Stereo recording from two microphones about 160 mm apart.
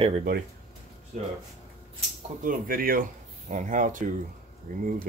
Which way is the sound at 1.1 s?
45° right (ahead or behind).